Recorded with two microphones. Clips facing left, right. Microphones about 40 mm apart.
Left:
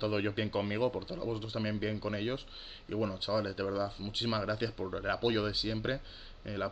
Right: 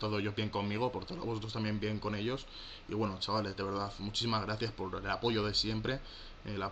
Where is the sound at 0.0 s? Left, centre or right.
Centre.